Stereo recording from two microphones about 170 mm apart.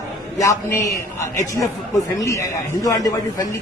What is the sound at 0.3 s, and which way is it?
Speech, 20° left (ahead or behind).